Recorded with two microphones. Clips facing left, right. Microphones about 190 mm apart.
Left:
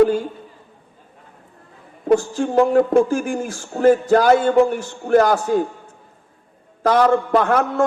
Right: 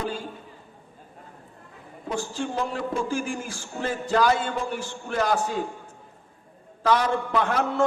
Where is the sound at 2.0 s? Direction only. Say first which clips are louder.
Left 12 dB; 50° left (ahead or behind).